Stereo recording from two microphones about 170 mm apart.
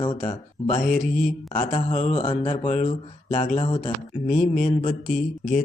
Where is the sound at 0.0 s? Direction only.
30° left (ahead or behind).